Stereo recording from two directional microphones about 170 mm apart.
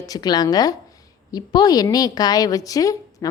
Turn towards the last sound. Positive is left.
turn(degrees=20)  # may be behind; listen again after turning